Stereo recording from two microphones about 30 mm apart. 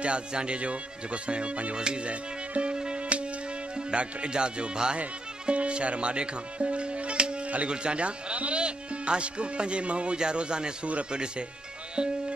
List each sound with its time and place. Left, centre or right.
0.0 s speech: right
1.8 s speech: right
2.0 s music: right
2.7 s music: right
3.7 s speech: right
7.4 s a sound: right
7.7 s a man's voice: right